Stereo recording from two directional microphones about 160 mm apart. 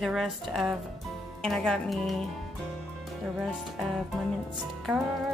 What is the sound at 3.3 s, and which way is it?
Speech, centre (ahead or behind).